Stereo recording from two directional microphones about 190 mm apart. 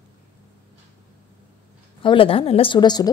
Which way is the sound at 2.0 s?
25° left (ahead or behind).